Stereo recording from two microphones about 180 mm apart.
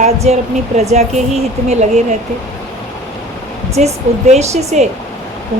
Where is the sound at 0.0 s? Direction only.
35° right (ahead or behind).